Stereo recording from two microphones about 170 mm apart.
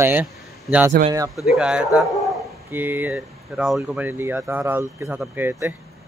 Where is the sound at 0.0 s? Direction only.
10° right (ahead or behind).